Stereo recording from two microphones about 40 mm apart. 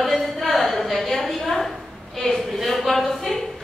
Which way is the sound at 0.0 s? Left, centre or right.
Centre.